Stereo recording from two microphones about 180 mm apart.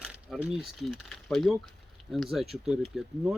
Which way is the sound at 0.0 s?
5° right (ahead or behind).